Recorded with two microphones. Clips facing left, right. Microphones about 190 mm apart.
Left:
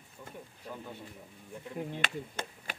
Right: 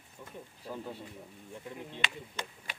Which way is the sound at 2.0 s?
50° left (ahead or behind).